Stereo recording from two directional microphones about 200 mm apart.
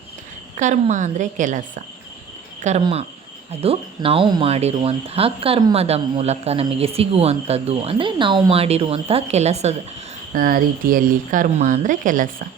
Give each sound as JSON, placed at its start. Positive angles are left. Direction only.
{"t": 0.5, "sound": "speech", "side_deg": -40}
{"t": 10.3, "sound": "speech", "side_deg": -45}